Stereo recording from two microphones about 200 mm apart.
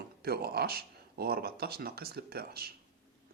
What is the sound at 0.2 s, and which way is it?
Speech, 50° right (ahead or behind).